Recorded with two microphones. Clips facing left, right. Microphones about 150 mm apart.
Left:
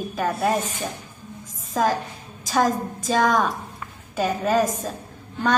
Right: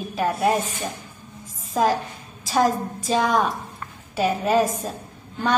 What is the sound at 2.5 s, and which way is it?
A woman's voice, 5° right (ahead or behind).